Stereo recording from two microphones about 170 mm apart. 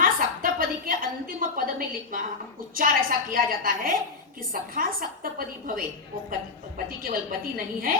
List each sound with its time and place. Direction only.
0.0 s a sound: 55° right (ahead or behind)
2.1 s a woman's voice: 50° right (ahead or behind)
7.0 s a woman's voice: 60° right (ahead or behind)